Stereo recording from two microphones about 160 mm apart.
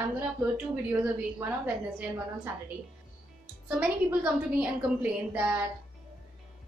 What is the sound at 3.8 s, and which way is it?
A woman's voice, 5° right (ahead or behind).